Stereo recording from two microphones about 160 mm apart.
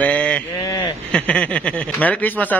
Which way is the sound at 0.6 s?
25° left (ahead or behind).